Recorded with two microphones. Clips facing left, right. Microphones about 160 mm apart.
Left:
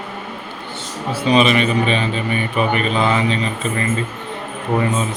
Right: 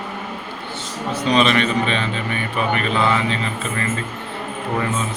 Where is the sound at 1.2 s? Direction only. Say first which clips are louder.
Left 2 dB; 10° left (ahead or behind).